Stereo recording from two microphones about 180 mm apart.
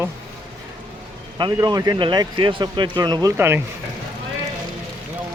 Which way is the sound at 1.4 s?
20° right (ahead or behind).